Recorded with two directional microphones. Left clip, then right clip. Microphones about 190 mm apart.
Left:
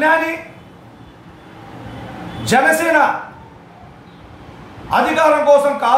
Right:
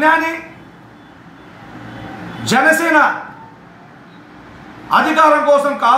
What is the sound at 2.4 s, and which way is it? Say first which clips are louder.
Speech: right 1 dB; 15° left (ahead or behind).